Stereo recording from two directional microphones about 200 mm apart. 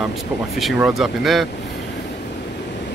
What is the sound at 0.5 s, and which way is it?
Speech, centre (ahead or behind).